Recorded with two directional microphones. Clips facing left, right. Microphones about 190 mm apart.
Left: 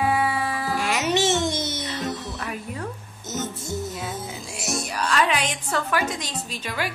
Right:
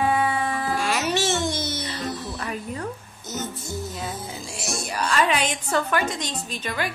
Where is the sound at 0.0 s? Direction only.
5° left (ahead or behind).